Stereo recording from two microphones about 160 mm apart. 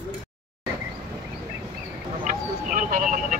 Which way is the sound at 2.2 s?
55° right (ahead or behind).